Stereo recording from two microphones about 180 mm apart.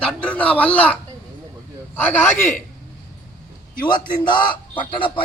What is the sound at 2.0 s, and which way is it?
Speech, 10° left (ahead or behind).